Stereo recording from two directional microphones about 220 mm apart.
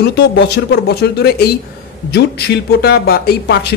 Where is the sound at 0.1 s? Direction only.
50° left (ahead or behind).